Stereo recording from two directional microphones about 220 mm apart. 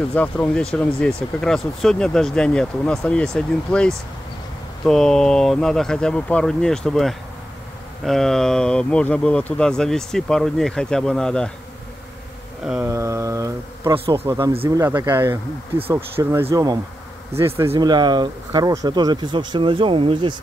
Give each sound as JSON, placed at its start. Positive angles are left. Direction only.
{"t": 0.1, "sound": "speech", "side_deg": 5}
{"t": 12.6, "sound": "a sound", "side_deg": -10}
{"t": 14.2, "sound": "speech", "side_deg": -10}